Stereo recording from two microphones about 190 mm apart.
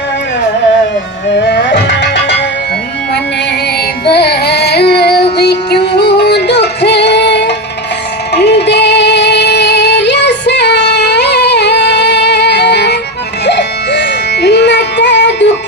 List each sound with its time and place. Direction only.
1.3 s music: 60° left (ahead or behind)
4.0 s music: 60° left (ahead or behind)